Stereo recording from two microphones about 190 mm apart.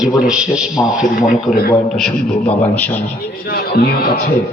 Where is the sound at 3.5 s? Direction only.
55° left (ahead or behind).